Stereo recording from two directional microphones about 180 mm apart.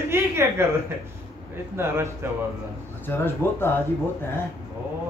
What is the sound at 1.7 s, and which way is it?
Speech, 15° right (ahead or behind).